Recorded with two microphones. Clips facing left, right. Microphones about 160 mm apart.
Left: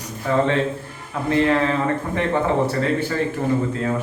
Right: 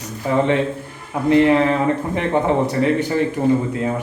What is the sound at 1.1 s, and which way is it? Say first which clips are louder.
Speech: right 5 dB; 15° right (ahead or behind).